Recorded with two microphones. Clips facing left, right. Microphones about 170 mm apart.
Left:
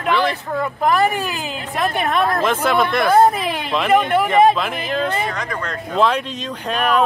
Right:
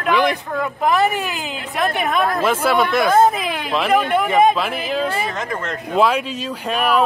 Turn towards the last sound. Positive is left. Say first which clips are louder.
# even
turn(degrees=-5)  # may be behind; listen again after turning